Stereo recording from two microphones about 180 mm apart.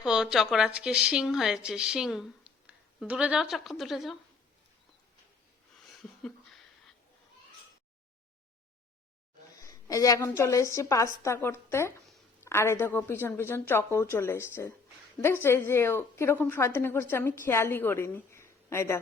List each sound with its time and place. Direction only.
0.0 s speech: 5° right (ahead or behind)
9.6 s a woman's voice: 20° left (ahead or behind)